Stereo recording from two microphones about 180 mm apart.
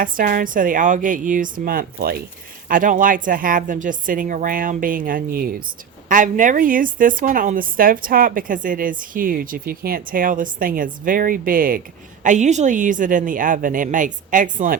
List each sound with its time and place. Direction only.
0.0 s a woman's voice: 50° right (ahead or behind)